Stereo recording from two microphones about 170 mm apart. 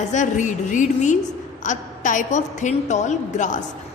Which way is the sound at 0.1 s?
45° left (ahead or behind).